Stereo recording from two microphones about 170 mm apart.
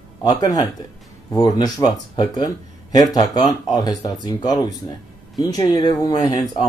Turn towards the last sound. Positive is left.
turn(degrees=20)  # may be behind; listen again after turning